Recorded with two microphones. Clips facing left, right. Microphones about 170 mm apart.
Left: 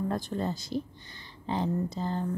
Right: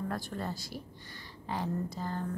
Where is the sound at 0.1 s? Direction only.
20° left (ahead or behind).